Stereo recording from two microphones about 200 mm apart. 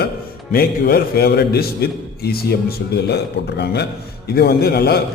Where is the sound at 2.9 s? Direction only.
55° left (ahead or behind).